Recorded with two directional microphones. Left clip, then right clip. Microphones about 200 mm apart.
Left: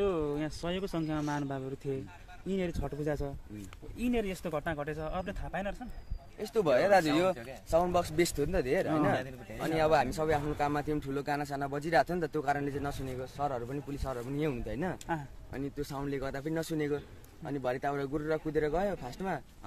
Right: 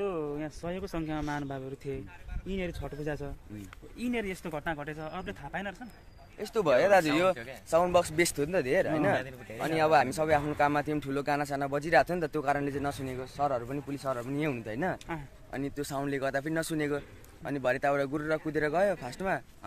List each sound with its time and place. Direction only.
0.0 s speech: 50° left (ahead or behind)
6.4 s speech: 5° right (ahead or behind)